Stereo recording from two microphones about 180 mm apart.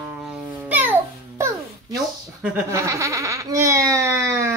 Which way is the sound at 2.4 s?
10° right (ahead or behind).